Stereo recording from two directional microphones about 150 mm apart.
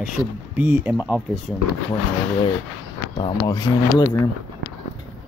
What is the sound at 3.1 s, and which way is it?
Speech, 30° left (ahead or behind).